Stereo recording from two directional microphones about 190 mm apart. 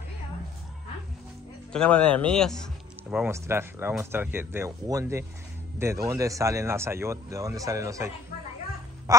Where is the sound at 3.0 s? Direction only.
10° right (ahead or behind).